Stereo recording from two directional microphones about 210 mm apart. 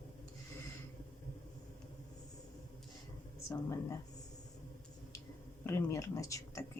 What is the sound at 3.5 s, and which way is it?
Speech, 15° left (ahead or behind).